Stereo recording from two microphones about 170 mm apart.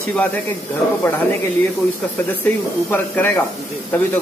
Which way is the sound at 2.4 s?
10° left (ahead or behind).